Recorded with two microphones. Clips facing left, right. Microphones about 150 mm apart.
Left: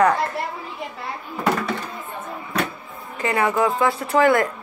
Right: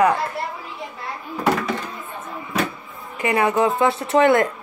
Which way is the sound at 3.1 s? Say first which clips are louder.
Right 2 dB; 15° right (ahead or behind).